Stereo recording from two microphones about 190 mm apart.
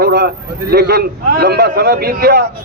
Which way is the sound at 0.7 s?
55° right (ahead or behind).